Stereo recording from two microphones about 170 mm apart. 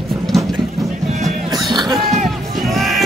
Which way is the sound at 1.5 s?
25° right (ahead or behind).